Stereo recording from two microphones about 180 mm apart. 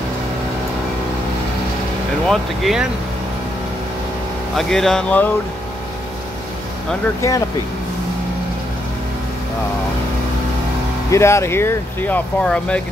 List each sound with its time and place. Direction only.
2.2 s speech: centre (ahead or behind)
4.6 s speech: centre (ahead or behind)
7.2 s speech: 15° left (ahead or behind)
11.1 s speech: 15° left (ahead or behind)